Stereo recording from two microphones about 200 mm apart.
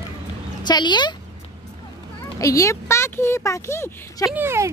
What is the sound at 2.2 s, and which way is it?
Speech, 15° left (ahead or behind).